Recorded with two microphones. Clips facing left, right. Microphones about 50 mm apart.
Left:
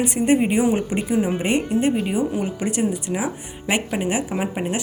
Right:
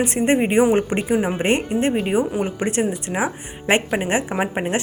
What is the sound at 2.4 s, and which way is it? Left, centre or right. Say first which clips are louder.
A woman's voice: right 2 dB; right.